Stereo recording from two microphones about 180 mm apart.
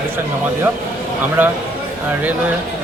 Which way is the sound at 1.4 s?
10° right (ahead or behind).